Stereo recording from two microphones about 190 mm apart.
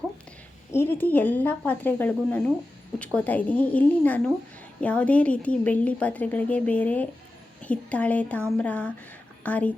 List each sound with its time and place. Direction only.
0.7 s a woman's voice: 10° left (ahead or behind)